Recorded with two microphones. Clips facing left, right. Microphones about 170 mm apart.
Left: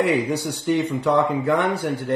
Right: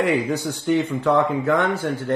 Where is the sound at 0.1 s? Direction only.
15° left (ahead or behind).